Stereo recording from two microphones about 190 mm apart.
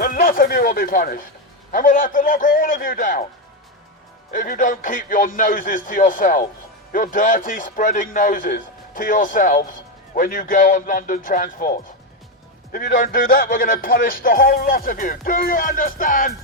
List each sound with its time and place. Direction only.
0.0 s a sound: 45° left (ahead or behind)
1.7 s a man's voice: 45° left (ahead or behind)
4.3 s a man's voice: 45° left (ahead or behind)
12.7 s a man's voice: 45° left (ahead or behind)